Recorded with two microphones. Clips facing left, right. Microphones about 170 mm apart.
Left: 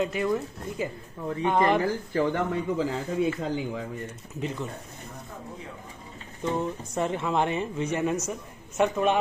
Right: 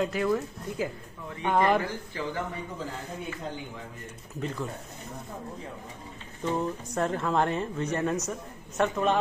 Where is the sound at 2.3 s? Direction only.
90° left.